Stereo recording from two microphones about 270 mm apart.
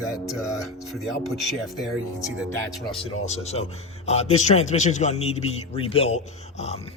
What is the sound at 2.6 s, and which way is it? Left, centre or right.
Speech, centre.